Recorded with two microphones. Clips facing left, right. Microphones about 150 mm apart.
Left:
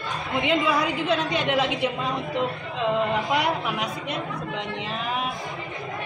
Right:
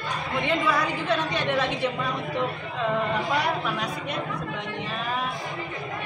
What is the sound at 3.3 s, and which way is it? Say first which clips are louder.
Speech: left 1 dB; 15° left (ahead or behind).